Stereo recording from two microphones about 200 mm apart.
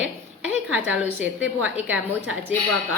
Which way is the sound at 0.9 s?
5° right (ahead or behind).